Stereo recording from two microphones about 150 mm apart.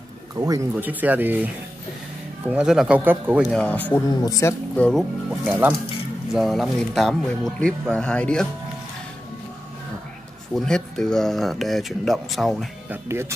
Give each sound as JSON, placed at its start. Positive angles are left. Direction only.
{"t": 0.4, "sound": "speech", "side_deg": -25}
{"t": 0.7, "sound": "speech", "side_deg": -10}
{"t": 3.4, "sound": "speech", "side_deg": 5}
{"t": 4.1, "sound": "speech", "side_deg": 25}
{"t": 4.7, "sound": "speech", "side_deg": 5}
{"t": 5.5, "sound": "speech", "side_deg": -15}
{"t": 6.3, "sound": "speech", "side_deg": 0}
{"t": 10.5, "sound": "speech", "side_deg": 5}
{"t": 12.9, "sound": "speech", "side_deg": -15}